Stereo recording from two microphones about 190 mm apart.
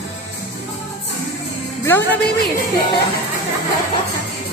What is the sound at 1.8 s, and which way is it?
Speech, 15° left (ahead or behind).